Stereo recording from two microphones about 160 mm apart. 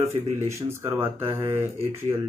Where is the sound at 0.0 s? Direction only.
15° right (ahead or behind).